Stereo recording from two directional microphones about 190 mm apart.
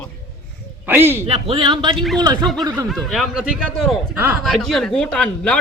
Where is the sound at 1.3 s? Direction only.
30° right (ahead or behind).